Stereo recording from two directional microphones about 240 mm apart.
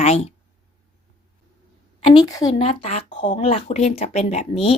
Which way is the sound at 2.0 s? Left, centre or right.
Centre.